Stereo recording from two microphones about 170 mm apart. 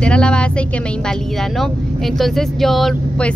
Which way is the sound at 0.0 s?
5° left (ahead or behind).